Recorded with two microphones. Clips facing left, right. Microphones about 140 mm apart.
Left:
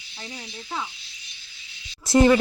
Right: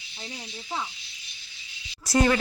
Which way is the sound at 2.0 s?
25° left (ahead or behind).